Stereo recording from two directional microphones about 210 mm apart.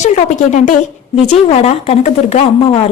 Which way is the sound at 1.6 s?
30° left (ahead or behind).